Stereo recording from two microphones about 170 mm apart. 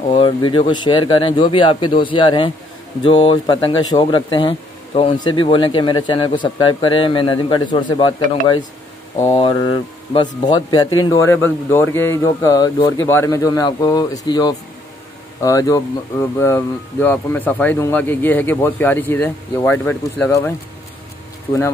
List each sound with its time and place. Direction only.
0.1 s speech: 30° left (ahead or behind)
9.2 s speech: 35° left (ahead or behind); by 12.3 s 15° left (ahead or behind)
12.3 s speech: 25° left (ahead or behind)